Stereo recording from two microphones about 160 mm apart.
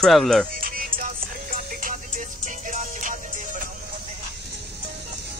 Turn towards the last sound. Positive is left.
turn(degrees=-55)  # may be behind; listen again after turning